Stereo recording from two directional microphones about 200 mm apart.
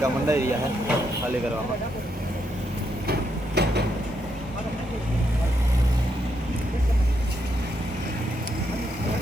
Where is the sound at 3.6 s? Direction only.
55° right (ahead or behind).